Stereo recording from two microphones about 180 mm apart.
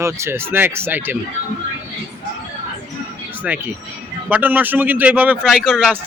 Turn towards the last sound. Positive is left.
turn(degrees=0)  # may be behind; listen again after turning